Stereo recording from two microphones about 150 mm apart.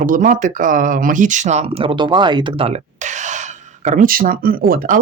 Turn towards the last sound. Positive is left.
turn(degrees=-75)  # may be behind; listen again after turning